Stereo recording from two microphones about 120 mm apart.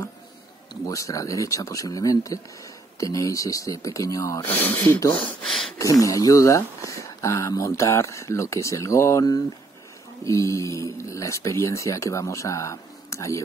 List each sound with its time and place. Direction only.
0.8 s speech: 25° left (ahead or behind)
4.5 s speech: 15° left (ahead or behind)
5.4 s a sound: 5° left (ahead or behind)
5.8 s speech: 30° left (ahead or behind)